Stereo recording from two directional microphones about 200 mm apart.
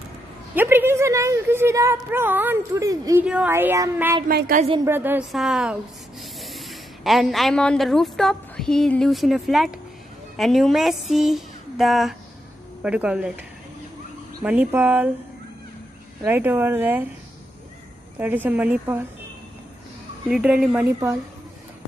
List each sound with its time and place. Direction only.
0.6 s a woman's voice: 10° right (ahead or behind)
4.3 s a woman's voice: 45° right (ahead or behind)
4.8 s a sound: 10° right (ahead or behind)
6.4 s a woman's voice: centre (ahead or behind)
10.3 s a sound: centre (ahead or behind)
14.4 s a woman's voice: 5° right (ahead or behind)
16.3 s a woman's voice: 10° right (ahead or behind)
18.2 s a woman's voice: 10° right (ahead or behind)
20.2 s a sound: 5° right (ahead or behind)